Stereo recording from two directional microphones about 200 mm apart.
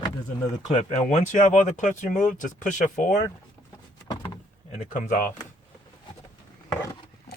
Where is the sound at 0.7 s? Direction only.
35° left (ahead or behind).